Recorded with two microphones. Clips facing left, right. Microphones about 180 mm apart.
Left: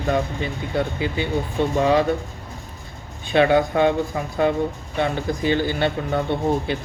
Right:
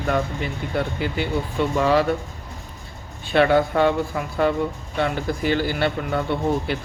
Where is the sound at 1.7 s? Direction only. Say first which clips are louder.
Left 1 dB; 20° left (ahead or behind).